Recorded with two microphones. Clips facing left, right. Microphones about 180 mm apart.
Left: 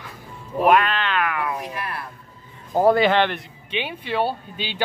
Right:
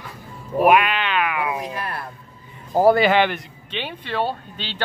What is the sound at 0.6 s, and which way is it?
Cat, 10° right (ahead or behind).